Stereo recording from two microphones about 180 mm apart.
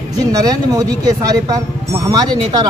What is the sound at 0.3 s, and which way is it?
Speech, 20° right (ahead or behind).